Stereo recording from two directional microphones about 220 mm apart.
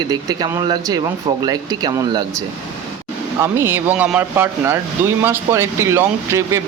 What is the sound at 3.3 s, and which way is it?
Speech, 10° right (ahead or behind).